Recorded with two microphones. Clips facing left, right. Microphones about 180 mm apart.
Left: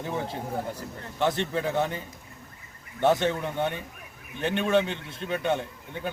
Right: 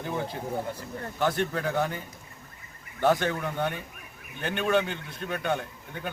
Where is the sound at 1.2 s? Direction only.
20° left (ahead or behind).